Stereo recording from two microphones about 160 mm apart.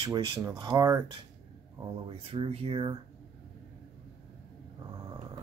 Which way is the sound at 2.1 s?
30° right (ahead or behind).